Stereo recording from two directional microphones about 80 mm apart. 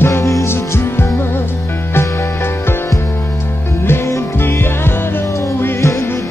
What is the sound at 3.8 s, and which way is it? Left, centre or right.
Music, left.